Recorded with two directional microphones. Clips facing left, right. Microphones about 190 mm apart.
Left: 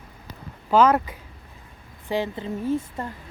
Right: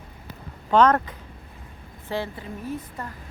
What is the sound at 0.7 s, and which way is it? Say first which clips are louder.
A woman's voice: even; 5° left (ahead or behind).